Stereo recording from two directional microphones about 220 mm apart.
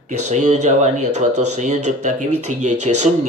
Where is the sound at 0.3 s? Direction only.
30° right (ahead or behind).